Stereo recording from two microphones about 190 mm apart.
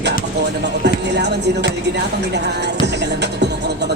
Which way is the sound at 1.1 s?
65° right (ahead or behind).